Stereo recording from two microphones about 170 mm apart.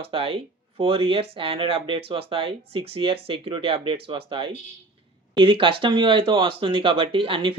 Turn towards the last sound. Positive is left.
turn(degrees=-30)  # may be behind; listen again after turning